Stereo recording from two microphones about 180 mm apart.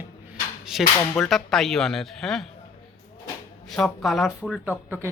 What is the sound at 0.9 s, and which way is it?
Cap gun, 5° left (ahead or behind).